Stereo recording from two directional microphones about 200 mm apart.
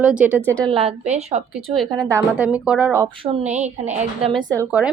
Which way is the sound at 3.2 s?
30° right (ahead or behind).